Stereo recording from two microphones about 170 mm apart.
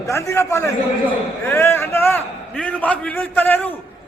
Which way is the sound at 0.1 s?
15° left (ahead or behind).